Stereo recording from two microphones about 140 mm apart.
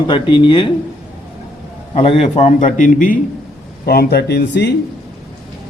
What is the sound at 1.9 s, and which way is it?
A man's voice, 50° left (ahead or behind).